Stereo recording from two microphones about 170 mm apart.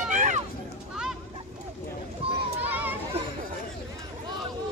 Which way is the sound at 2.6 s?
10° right (ahead or behind).